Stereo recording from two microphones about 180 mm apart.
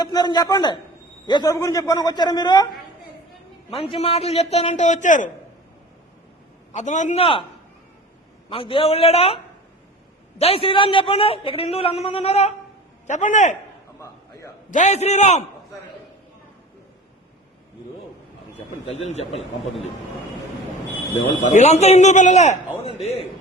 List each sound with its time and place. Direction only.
0.0 s speech: 25° left (ahead or behind)
3.8 s a man's voice: 35° left (ahead or behind)
6.7 s a man's voice: 40° left (ahead or behind)
8.4 s a man's voice: 30° left (ahead or behind)
14.0 s a sound: 15° left (ahead or behind)
14.7 s a man's voice: 40° left (ahead or behind)
19.0 s a man's voice: 35° left (ahead or behind)
21.5 s a man's voice: 40° left (ahead or behind)